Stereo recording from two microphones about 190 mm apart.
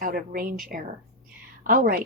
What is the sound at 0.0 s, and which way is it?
Speech, 45° right (ahead or behind).